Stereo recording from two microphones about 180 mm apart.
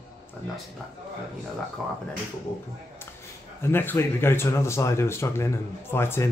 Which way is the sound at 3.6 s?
10° left (ahead or behind).